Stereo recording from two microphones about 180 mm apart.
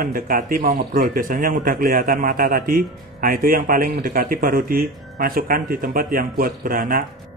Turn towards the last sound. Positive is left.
turn(degrees=-50)  # may be behind; listen again after turning